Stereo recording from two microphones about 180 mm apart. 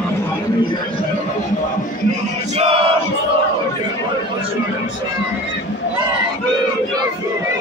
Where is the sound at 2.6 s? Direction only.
30° right (ahead or behind).